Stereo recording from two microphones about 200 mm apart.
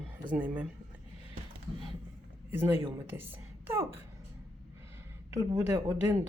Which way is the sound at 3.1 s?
10° right (ahead or behind).